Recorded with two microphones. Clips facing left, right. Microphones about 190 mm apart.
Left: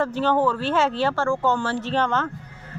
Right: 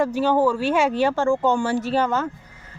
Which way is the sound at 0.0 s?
10° right (ahead or behind).